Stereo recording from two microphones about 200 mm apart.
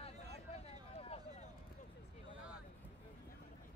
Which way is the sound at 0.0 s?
30° left (ahead or behind).